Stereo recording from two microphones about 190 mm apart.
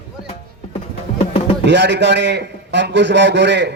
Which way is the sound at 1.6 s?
65° right (ahead or behind).